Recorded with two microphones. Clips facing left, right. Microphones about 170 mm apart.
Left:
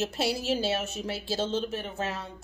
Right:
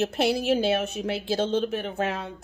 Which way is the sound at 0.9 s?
15° right (ahead or behind).